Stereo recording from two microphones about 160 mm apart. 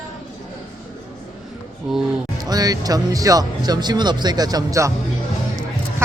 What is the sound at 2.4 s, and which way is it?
Speech, 25° right (ahead or behind).